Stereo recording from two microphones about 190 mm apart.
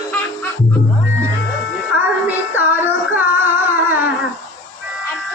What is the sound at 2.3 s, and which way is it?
Music, 10° right (ahead or behind).